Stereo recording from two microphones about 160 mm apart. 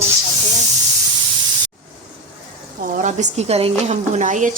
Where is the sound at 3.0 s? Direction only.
50° right (ahead or behind).